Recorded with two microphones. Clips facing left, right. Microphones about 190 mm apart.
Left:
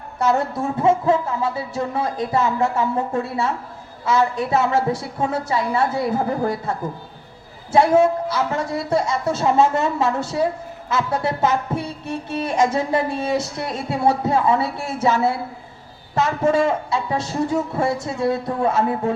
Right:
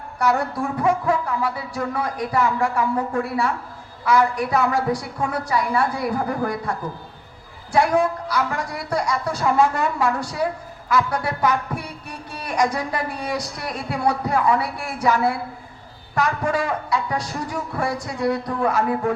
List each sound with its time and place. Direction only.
0.2 s a woman's voice: 25° left (ahead or behind)